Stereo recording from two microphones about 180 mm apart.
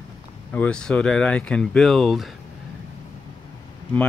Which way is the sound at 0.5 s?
5° left (ahead or behind).